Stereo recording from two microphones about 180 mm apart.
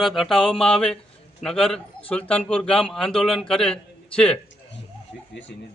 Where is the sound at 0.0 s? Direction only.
Centre (ahead or behind).